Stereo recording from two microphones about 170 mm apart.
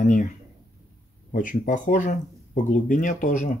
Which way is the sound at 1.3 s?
50° left (ahead or behind).